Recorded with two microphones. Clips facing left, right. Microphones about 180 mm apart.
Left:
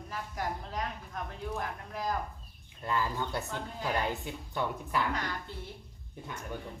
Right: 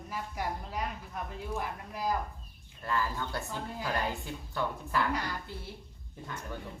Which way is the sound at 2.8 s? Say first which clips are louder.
Left 1 dB; 20° left (ahead or behind).